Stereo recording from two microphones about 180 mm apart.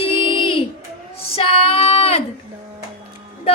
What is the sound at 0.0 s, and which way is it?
Music, 30° left (ahead or behind).